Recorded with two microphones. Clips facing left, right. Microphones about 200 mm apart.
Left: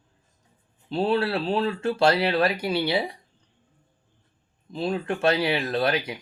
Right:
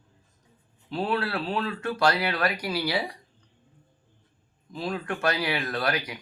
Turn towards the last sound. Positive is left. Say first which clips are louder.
# left 4 dB
turn(degrees=25)  # may be behind; listen again after turning